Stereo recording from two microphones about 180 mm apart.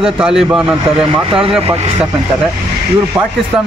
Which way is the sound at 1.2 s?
30° right (ahead or behind).